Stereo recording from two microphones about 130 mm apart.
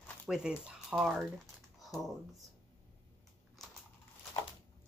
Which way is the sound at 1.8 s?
Centre (ahead or behind).